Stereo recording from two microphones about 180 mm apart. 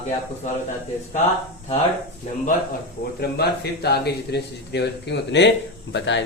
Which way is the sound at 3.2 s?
65° left (ahead or behind).